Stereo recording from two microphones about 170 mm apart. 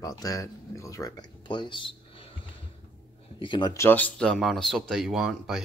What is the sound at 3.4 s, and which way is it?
Speech, 25° left (ahead or behind).